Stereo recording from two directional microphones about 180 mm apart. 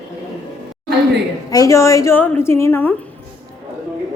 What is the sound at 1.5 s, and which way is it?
A woman's voice, 20° left (ahead or behind).